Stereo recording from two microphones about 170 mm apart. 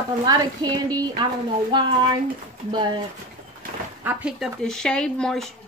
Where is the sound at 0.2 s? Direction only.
25° right (ahead or behind).